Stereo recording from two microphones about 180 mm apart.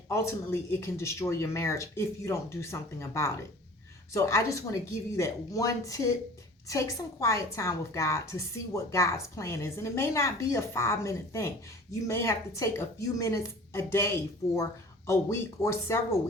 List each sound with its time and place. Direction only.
0.1 s a woman's voice: 15° left (ahead or behind)